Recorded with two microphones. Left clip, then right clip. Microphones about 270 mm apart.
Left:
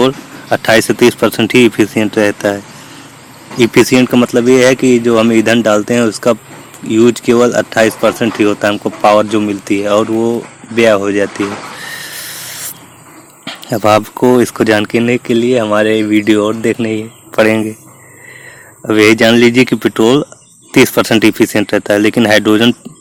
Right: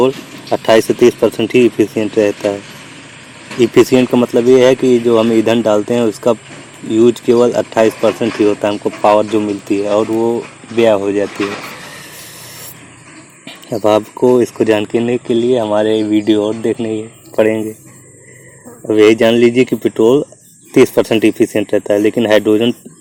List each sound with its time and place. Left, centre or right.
0.6 s speech: left
3.6 s speech: left
9.0 s speech: left
9.3 s speech: left
13.4 s speech: left
18.9 s speech: left